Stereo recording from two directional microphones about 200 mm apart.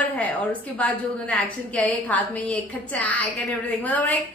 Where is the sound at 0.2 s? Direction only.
5° left (ahead or behind).